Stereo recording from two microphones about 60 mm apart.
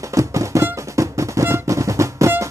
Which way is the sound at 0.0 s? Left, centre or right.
Right.